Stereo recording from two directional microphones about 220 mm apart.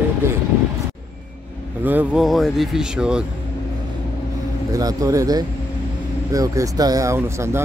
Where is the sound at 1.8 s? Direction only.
10° right (ahead or behind).